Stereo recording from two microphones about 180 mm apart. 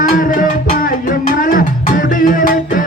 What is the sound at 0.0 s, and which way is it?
Music, 50° left (ahead or behind).